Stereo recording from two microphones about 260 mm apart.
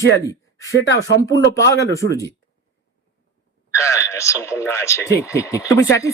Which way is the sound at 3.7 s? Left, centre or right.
Centre.